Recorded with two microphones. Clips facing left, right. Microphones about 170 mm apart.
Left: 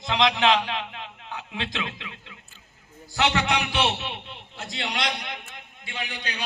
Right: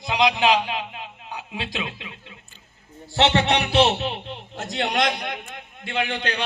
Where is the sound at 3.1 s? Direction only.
30° right (ahead or behind).